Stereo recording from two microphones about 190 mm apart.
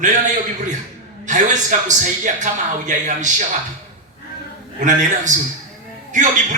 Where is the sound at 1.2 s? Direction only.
40° right (ahead or behind).